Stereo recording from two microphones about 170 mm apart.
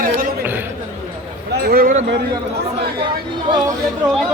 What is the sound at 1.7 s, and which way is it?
Speech, 55° right (ahead or behind).